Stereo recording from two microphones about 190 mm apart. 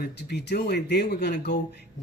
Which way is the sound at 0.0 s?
60° left (ahead or behind).